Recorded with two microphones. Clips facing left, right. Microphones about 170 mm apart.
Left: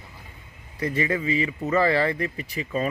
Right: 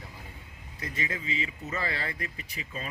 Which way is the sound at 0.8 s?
65° left (ahead or behind).